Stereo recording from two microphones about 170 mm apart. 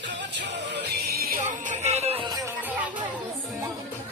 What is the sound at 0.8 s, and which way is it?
Music, 70° right (ahead or behind).